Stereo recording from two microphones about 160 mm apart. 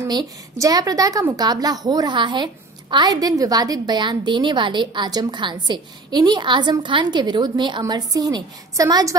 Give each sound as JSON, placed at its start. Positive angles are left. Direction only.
{"t": 0.0, "sound": "a woman's voice", "side_deg": -25}